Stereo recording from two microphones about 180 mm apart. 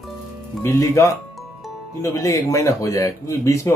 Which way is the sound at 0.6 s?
15° left (ahead or behind).